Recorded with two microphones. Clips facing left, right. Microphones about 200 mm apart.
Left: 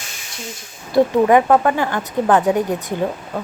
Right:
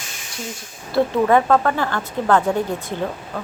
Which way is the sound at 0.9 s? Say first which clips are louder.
Left 3 dB; 15° left (ahead or behind).